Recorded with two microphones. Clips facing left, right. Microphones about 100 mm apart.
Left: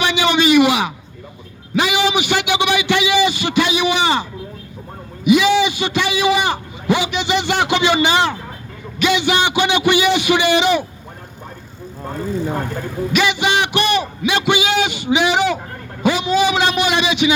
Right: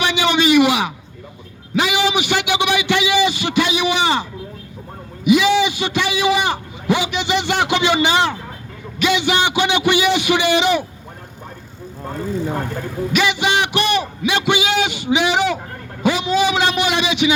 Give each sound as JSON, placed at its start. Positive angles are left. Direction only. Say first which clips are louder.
{"t": 0.0, "sound": "a sound", "louder": "left 1 dB", "side_deg": 90}
{"t": 1.7, "sound": "a man's voice", "louder": "left 1 dB", "side_deg": 70}
{"t": 13.1, "sound": "a man's voice", "louder": "left 1 dB", "side_deg": 90}